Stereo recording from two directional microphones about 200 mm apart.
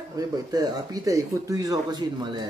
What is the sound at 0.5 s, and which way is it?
Speech, 20° right (ahead or behind).